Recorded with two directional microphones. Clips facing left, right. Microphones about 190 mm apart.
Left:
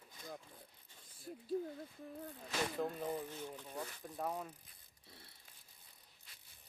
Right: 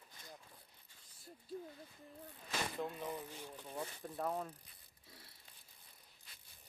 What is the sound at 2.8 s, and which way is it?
Speech, 40° left (ahead or behind).